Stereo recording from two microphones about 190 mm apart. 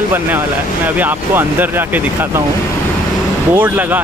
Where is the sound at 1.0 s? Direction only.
10° right (ahead or behind).